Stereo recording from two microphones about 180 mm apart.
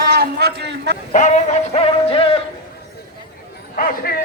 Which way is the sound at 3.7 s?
55° left (ahead or behind).